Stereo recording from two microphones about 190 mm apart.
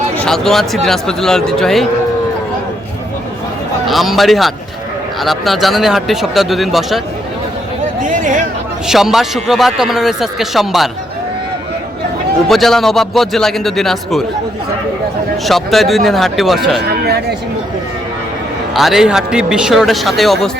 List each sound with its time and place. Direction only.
0.3 s speech: centre (ahead or behind)
3.8 s speech: centre (ahead or behind)
8.0 s a sound: 45° right (ahead or behind)
8.9 s speech: centre (ahead or behind)
12.5 s speech: centre (ahead or behind)
15.4 s speech: centre (ahead or behind)
16.8 s speech: 55° right (ahead or behind)
18.7 s speech: centre (ahead or behind)